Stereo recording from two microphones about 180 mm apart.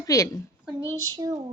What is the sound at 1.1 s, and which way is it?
Child singing, 20° right (ahead or behind).